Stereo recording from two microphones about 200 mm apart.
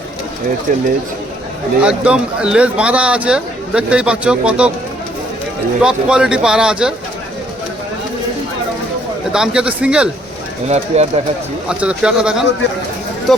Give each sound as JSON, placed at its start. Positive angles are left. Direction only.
{"t": 0.7, "sound": "speech", "side_deg": -45}
{"t": 1.8, "sound": "a man's voice", "side_deg": -5}
{"t": 5.8, "sound": "a man's voice", "side_deg": -5}
{"t": 9.3, "sound": "a man's voice", "side_deg": -5}
{"t": 10.7, "sound": "speech", "side_deg": -35}
{"t": 11.7, "sound": "a man's voice", "side_deg": -5}